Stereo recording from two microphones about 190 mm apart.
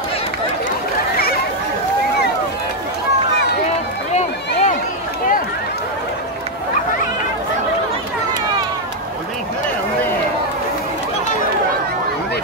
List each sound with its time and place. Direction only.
4.1 s run: 35° left (ahead or behind)